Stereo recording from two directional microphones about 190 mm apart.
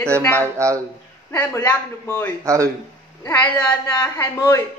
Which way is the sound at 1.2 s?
10° left (ahead or behind).